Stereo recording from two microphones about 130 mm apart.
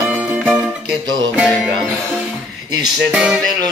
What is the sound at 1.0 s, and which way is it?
Music, 30° right (ahead or behind).